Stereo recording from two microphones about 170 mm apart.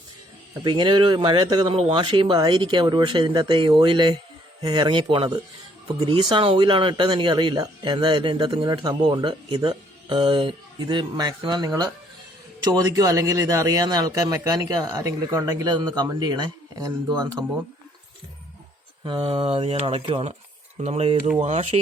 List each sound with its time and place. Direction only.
0.5 s speech: 25° right (ahead or behind)
19.0 s speech: 30° right (ahead or behind)